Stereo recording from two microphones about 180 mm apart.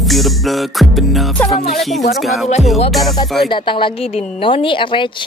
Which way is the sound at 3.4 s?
25° left (ahead or behind).